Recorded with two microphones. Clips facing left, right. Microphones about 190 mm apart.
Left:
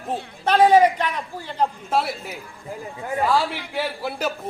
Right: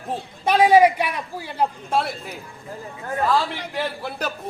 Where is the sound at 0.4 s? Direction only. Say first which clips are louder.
Even; 10° right (ahead or behind).